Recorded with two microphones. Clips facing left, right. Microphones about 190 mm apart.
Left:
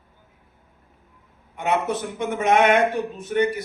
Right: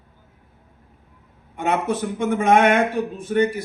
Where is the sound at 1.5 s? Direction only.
50° right (ahead or behind).